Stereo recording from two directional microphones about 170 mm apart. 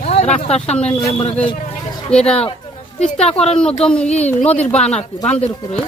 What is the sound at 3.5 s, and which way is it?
Speech, 5° left (ahead or behind).